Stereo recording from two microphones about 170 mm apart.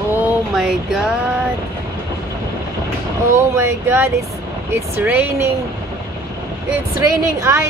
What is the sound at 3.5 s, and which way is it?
A woman's voice, 15° right (ahead or behind).